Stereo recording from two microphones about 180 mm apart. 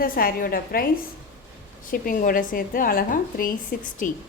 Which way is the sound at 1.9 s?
50° left (ahead or behind).